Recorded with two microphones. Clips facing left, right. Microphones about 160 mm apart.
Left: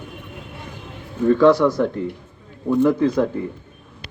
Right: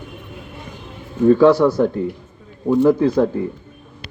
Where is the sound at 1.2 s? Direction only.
25° right (ahead or behind).